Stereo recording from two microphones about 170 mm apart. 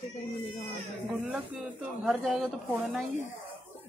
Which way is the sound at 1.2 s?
5° right (ahead or behind).